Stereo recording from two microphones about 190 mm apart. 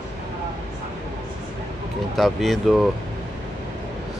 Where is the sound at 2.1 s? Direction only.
Centre (ahead or behind).